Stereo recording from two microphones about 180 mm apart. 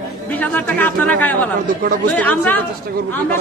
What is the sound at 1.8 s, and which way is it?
Speech, 55° right (ahead or behind).